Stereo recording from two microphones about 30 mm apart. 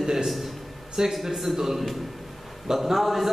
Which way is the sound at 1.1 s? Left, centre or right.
Centre.